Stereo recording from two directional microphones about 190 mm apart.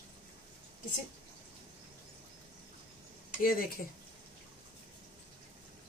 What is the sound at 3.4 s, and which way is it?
Speech, 50° left (ahead or behind).